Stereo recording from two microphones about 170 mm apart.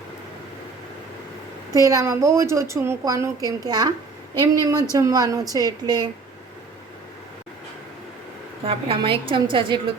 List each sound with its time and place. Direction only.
1.8 s a woman's voice: 20° right (ahead or behind)
8.6 s a woman's voice: 30° right (ahead or behind)